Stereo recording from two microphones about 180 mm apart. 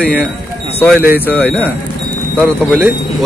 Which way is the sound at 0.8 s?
10° right (ahead or behind).